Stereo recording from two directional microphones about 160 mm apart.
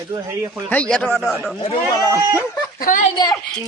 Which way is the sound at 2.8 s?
55° left (ahead or behind).